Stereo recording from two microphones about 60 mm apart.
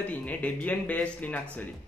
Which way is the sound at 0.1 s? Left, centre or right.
Left.